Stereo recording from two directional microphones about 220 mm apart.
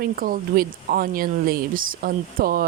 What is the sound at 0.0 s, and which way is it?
Speech, 40° right (ahead or behind).